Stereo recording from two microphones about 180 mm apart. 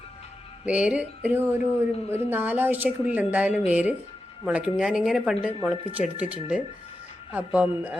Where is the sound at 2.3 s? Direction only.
10° right (ahead or behind).